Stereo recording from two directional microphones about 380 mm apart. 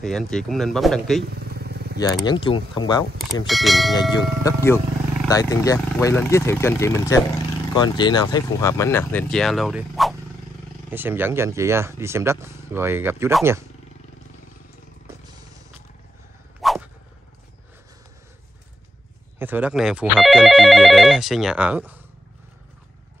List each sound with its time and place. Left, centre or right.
0.0 s speech: centre
1.2 s vehicle: right
2.0 s speech: centre
3.4 s speech: centre
3.9 s speech: centre
16.6 s whip: centre
19.3 s speech: centre